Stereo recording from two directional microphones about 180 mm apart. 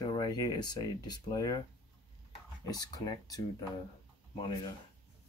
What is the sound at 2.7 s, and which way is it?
Speech, 20° left (ahead or behind).